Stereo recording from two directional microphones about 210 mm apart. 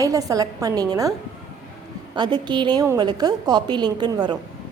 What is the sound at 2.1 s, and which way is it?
A woman's voice, 20° right (ahead or behind).